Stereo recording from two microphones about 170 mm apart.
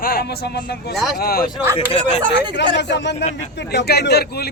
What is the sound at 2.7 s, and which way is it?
Speech, 90° left.